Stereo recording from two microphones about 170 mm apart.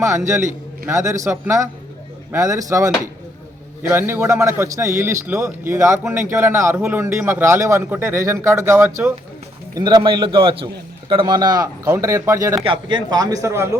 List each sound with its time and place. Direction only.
0.0 s a man's voice: 15° right (ahead or behind)
12.6 s speech: 30° right (ahead or behind)